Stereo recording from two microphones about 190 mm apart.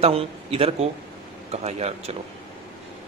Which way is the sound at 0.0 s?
30° right (ahead or behind).